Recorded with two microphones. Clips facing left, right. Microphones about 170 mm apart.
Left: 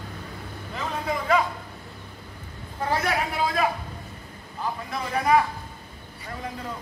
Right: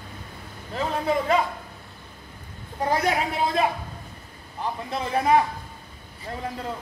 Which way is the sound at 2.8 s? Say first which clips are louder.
Right 2 dB; 20° right (ahead or behind).